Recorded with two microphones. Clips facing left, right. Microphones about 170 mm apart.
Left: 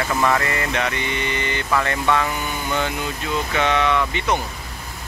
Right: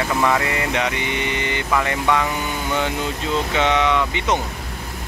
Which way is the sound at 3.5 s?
20° right (ahead or behind).